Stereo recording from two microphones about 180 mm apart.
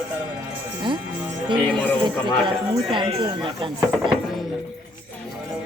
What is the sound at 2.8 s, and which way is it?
Speech, 30° right (ahead or behind).